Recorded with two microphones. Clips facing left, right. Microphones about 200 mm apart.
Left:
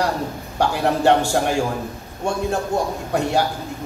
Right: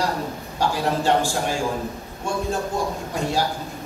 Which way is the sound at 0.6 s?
65° left (ahead or behind).